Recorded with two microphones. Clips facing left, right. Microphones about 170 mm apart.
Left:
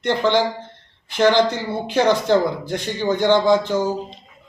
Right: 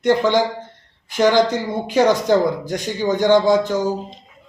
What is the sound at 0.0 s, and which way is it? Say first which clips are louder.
Speech: right 2 dB; 10° right (ahead or behind).